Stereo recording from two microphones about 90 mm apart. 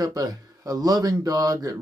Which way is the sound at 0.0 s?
45° right (ahead or behind).